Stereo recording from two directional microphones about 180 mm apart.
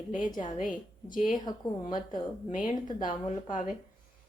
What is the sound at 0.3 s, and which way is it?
Speech, 45° left (ahead or behind).